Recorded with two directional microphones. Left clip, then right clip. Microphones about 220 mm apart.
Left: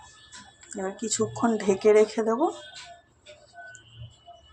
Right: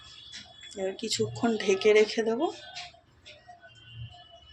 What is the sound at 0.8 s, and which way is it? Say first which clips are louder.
Speech: left 1 dB; centre (ahead or behind).